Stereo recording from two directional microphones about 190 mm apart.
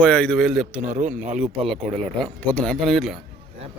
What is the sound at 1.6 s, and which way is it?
Speech, centre (ahead or behind).